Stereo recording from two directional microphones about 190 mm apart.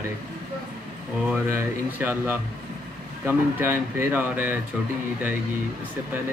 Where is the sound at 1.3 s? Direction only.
10° right (ahead or behind).